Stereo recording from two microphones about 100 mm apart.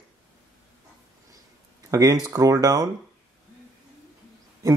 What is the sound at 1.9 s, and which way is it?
Speech, 35° right (ahead or behind).